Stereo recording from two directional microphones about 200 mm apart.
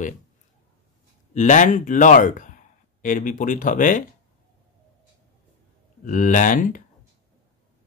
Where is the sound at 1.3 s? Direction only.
40° left (ahead or behind).